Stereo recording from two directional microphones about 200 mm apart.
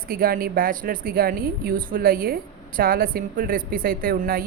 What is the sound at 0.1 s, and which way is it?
Speech, 45° right (ahead or behind).